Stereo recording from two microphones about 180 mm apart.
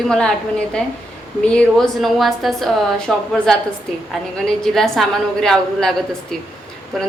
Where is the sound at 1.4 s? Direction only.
5° left (ahead or behind).